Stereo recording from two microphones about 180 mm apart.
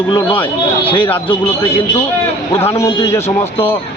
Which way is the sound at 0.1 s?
25° left (ahead or behind).